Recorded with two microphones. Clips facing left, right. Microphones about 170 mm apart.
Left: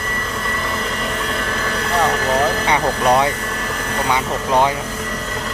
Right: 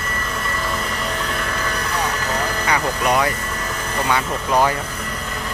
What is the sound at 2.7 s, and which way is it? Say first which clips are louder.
Speech: left 1 dB; 30° left (ahead or behind).